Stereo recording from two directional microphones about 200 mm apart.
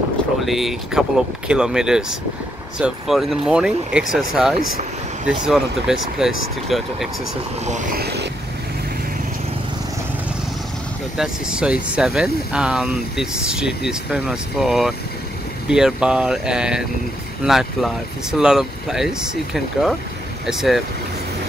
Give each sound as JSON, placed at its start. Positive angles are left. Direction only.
{"t": 0.5, "sound": "speech", "side_deg": 0}
{"t": 7.6, "sound": "speech", "side_deg": -40}
{"t": 11.1, "sound": "speech", "side_deg": -5}